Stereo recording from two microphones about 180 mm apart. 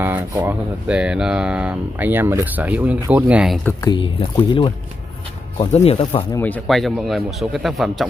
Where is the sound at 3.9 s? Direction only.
30° left (ahead or behind).